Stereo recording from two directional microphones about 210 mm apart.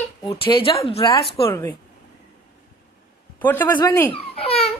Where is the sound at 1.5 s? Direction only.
10° left (ahead or behind).